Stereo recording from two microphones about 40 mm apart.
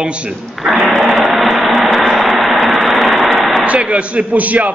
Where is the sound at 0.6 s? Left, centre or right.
Centre.